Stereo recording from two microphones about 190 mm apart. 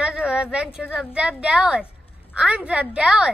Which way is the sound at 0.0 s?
5° right (ahead or behind).